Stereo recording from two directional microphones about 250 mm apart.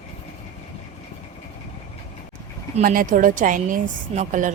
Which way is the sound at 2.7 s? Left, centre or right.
Right.